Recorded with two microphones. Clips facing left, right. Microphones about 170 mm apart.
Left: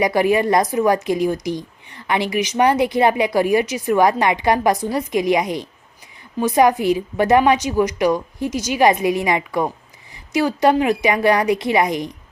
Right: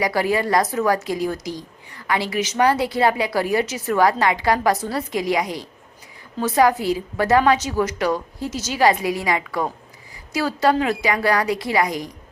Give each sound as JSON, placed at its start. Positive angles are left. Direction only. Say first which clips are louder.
{"t": 0.0, "sound": "a woman's voice", "louder": "left 4 dB", "side_deg": 20}